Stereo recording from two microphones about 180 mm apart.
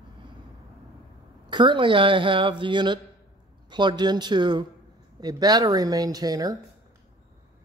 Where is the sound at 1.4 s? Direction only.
25° right (ahead or behind).